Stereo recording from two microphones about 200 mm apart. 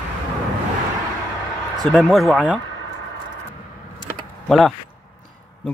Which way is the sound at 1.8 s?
Centre (ahead or behind).